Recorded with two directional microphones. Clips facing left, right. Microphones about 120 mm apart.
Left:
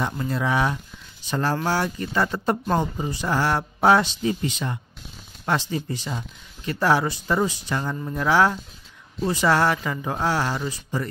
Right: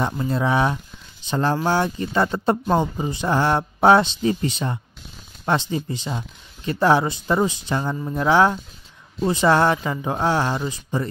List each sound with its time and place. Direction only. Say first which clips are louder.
0.0 s speech: right 3 dB; 25° right (ahead or behind)